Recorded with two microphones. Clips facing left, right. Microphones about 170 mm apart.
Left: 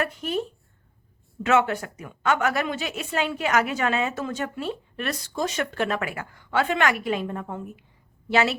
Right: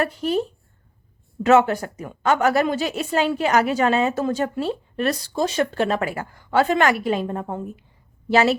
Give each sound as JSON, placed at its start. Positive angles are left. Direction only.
{"t": 0.0, "sound": "a woman's voice", "side_deg": -35}
{"t": 1.5, "sound": "a woman's voice", "side_deg": -35}